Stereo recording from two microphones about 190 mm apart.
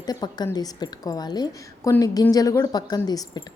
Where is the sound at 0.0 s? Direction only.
20° left (ahead or behind).